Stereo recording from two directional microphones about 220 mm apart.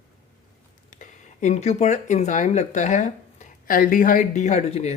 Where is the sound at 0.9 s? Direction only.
35° left (ahead or behind).